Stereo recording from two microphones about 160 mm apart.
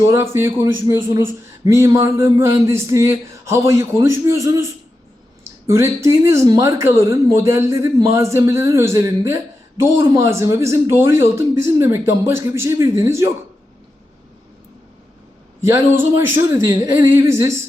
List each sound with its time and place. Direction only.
0.0 s speech: 15° right (ahead or behind)
15.7 s speech: 15° right (ahead or behind)